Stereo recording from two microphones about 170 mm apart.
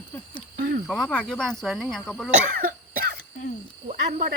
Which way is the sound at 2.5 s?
55° right (ahead or behind).